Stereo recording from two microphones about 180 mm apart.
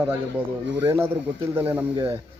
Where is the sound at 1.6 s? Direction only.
10° right (ahead or behind).